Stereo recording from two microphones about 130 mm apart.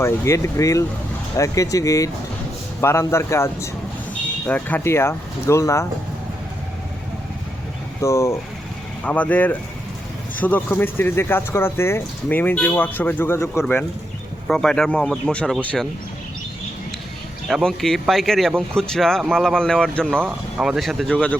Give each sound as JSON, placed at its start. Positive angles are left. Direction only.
{"t": 0.0, "sound": "speech", "side_deg": 20}
{"t": 8.0, "sound": "speech", "side_deg": 20}
{"t": 9.0, "sound": "speech", "side_deg": 10}
{"t": 14.4, "sound": "speech", "side_deg": 5}
{"t": 17.5, "sound": "speech", "side_deg": 0}
{"t": 20.1, "sound": "speech", "side_deg": -10}